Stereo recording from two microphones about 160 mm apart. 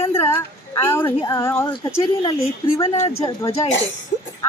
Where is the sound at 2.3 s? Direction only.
35° left (ahead or behind).